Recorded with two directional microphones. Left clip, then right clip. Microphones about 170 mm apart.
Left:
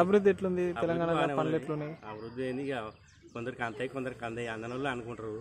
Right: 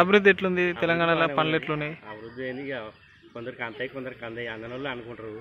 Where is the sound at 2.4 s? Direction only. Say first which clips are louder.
Right 2 dB; 35° left (ahead or behind).